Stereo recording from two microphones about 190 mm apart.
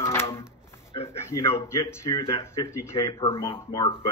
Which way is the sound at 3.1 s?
25° left (ahead or behind).